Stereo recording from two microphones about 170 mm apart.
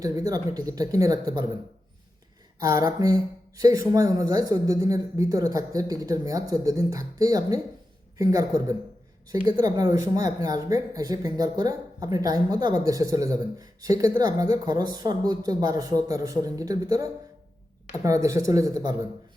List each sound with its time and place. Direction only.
0.0 s speech: 20° right (ahead or behind)
2.6 s speech: 20° right (ahead or behind)